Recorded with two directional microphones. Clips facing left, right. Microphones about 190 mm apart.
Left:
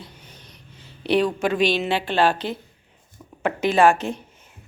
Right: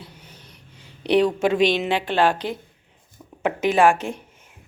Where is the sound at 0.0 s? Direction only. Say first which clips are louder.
Even; 10° right (ahead or behind).